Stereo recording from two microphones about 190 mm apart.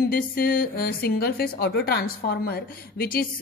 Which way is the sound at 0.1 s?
55° left (ahead or behind).